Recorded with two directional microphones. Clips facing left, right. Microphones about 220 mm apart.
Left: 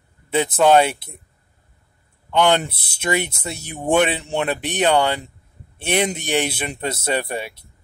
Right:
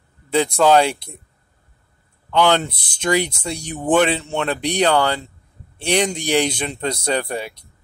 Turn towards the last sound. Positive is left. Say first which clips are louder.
# right 1 dB
turn(degrees=5)  # may be behind; listen again after turning